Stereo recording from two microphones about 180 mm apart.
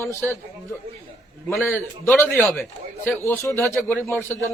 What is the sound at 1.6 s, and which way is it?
A man's voice, 10° left (ahead or behind).